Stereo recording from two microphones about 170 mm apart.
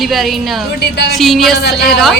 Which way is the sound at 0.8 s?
75° left (ahead or behind).